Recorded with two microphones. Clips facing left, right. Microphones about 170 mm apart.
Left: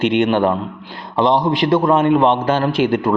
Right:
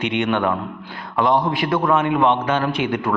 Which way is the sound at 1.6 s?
25° left (ahead or behind).